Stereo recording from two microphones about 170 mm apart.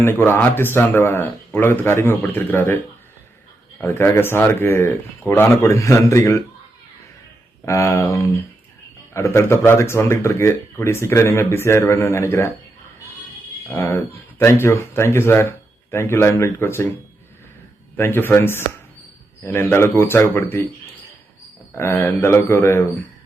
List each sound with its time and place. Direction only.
0.0 s speech: 15° left (ahead or behind)
7.6 s speech: 15° left (ahead or behind)
13.7 s speech: 15° left (ahead or behind)
17.9 s speech: 10° left (ahead or behind)
21.8 s speech: 15° left (ahead or behind)